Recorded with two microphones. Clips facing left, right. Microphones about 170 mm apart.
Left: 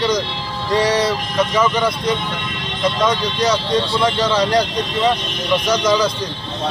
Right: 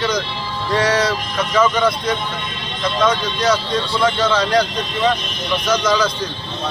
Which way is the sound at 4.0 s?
15° left (ahead or behind).